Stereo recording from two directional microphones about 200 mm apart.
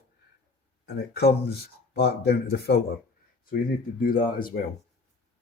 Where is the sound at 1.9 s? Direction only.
50° left (ahead or behind).